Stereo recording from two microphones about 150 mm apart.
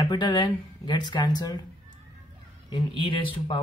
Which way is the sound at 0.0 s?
30° left (ahead or behind).